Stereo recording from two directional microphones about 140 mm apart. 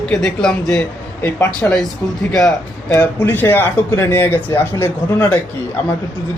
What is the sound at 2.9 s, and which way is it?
Speech, 15° left (ahead or behind).